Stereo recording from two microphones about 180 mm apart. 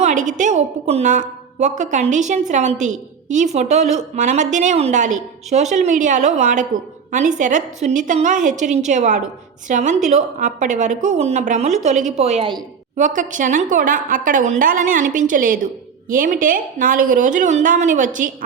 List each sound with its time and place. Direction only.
0.0 s a woman's voice: 45° right (ahead or behind)
13.0 s a woman's voice: 45° right (ahead or behind)